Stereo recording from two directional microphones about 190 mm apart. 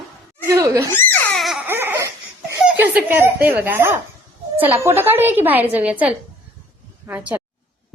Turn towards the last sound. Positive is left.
turn(degrees=-10)  # may be behind; listen again after turning